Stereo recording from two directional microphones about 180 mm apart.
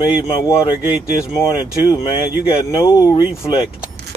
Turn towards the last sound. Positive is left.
turn(degrees=20)  # may be behind; listen again after turning